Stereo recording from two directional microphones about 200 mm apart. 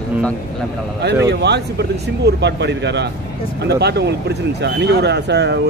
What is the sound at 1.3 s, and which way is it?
Speech, 55° right (ahead or behind).